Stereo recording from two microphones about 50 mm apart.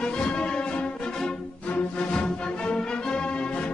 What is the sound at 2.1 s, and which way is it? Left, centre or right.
Music, centre.